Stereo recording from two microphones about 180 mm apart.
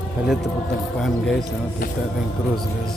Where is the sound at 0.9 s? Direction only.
5° left (ahead or behind).